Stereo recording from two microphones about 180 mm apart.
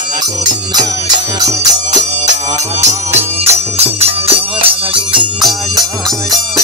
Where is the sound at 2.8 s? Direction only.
40° right (ahead or behind).